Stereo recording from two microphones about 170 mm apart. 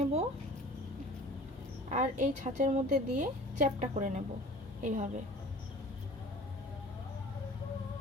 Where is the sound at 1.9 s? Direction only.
45° right (ahead or behind).